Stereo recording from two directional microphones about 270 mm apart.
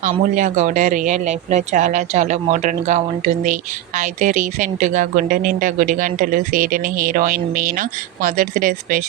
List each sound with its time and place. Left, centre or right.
0.0 s speech: right